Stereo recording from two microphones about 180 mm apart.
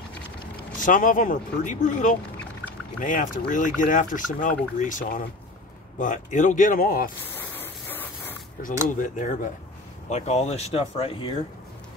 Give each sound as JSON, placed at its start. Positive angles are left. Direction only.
{"t": 0.7, "sound": "speech", "side_deg": 45}
{"t": 7.3, "sound": "spray", "side_deg": 10}
{"t": 8.8, "sound": "speech", "side_deg": 45}